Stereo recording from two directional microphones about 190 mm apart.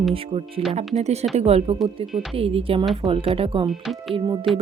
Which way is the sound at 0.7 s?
35° right (ahead or behind).